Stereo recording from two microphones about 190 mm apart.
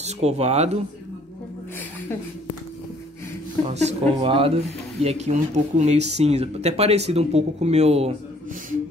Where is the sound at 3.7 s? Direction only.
35° right (ahead or behind).